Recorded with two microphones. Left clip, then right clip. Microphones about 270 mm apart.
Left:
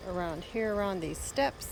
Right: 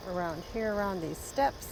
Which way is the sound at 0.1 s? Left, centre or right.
Centre.